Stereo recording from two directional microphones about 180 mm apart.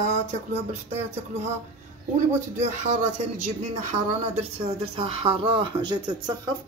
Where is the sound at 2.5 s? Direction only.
40° right (ahead or behind).